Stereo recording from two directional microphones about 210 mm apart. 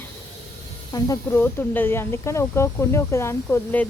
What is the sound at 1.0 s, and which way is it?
Speech, 15° left (ahead or behind).